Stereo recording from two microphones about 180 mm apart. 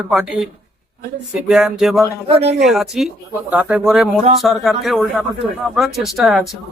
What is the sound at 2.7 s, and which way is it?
Speech, centre (ahead or behind).